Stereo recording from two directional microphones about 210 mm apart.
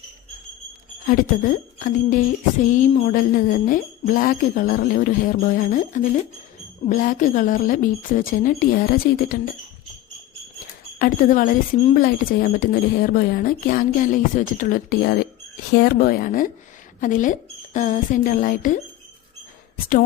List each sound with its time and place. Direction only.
1.0 s speech: 40° left (ahead or behind)
11.0 s speech: 40° left (ahead or behind)